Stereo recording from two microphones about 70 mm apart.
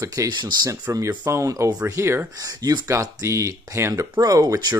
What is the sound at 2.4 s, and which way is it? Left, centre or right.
Speech, right.